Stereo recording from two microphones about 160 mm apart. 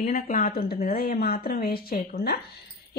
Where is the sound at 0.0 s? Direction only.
50° left (ahead or behind).